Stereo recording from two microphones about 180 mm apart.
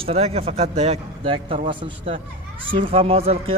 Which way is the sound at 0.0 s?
35° right (ahead or behind).